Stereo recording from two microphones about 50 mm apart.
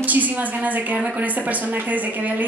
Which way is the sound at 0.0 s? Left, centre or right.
Right.